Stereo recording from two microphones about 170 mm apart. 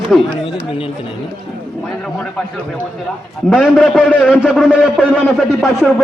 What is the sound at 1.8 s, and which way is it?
A man's voice, 5° left (ahead or behind).